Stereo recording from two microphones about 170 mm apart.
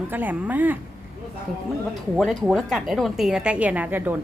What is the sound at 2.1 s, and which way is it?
A woman's voice, centre (ahead or behind).